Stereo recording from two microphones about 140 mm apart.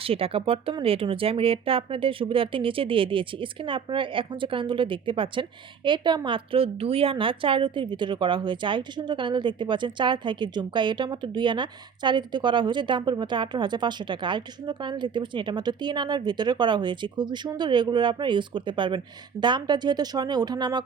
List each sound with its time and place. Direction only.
0.0 s speech: 40° right (ahead or behind)